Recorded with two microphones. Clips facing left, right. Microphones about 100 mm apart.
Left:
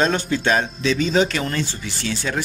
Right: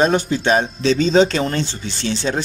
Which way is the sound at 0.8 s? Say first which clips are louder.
Right 4 dB; 30° right (ahead or behind).